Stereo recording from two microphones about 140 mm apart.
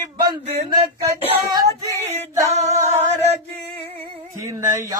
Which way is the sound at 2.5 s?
50° right (ahead or behind).